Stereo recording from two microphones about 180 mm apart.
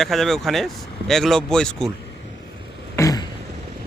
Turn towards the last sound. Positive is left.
turn(degrees=20)  # may be behind; listen again after turning